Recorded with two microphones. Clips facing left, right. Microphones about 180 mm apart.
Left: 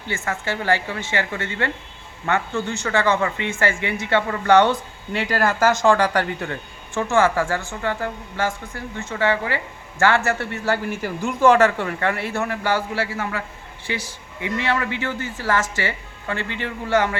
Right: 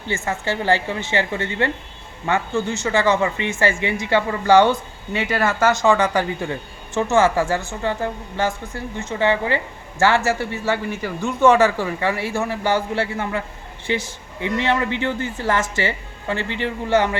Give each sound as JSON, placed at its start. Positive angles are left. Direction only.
{"t": 0.1, "sound": "speech", "side_deg": -25}
{"t": 10.3, "sound": "speech", "side_deg": -5}